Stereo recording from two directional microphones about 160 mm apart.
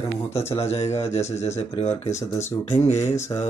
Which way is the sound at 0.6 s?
40° left (ahead or behind).